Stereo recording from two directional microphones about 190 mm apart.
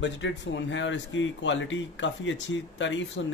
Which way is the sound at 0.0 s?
70° left (ahead or behind).